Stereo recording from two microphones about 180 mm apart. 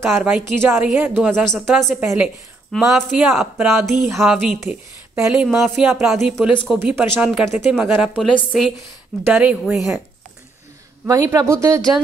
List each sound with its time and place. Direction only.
0.0 s a woman's voice: 10° right (ahead or behind)
1.4 s speech: centre (ahead or behind)
4.6 s speech: 15° right (ahead or behind); by 6.8 s centre (ahead or behind)
6.8 s a woman's voice: 10° right (ahead or behind)
11.1 s a woman's voice: 20° right (ahead or behind)